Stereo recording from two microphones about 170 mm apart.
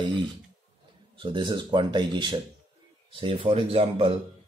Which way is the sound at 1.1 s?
30° right (ahead or behind).